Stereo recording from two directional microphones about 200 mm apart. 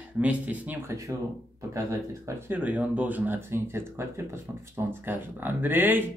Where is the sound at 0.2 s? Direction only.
5° right (ahead or behind).